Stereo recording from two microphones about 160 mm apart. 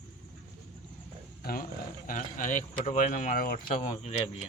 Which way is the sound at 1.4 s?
65° left (ahead or behind).